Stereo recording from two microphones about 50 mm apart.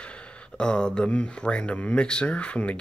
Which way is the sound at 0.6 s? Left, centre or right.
Centre.